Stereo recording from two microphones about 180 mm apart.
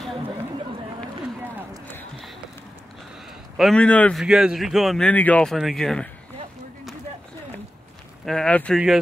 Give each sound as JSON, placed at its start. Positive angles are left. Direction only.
{"t": 3.5, "sound": "speech", "side_deg": 5}
{"t": 4.2, "sound": "speech", "side_deg": -5}
{"t": 8.3, "sound": "speech", "side_deg": 5}